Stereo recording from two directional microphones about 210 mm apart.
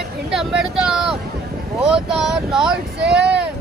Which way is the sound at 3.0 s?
55° right (ahead or behind).